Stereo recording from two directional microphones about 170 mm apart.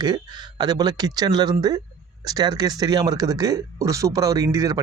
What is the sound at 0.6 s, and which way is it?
Speech, 25° right (ahead or behind).